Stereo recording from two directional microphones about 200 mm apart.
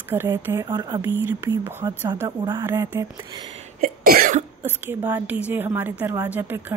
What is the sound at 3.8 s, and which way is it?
Cough, 40° right (ahead or behind).